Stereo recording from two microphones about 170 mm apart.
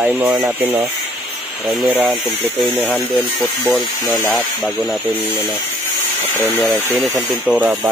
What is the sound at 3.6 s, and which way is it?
Speech, 15° left (ahead or behind).